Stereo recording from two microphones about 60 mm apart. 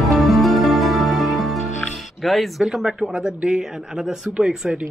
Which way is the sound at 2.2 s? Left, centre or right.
Centre.